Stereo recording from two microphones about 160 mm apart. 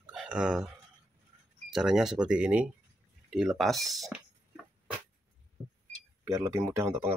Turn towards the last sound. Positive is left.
turn(degrees=-15)  # may be behind; listen again after turning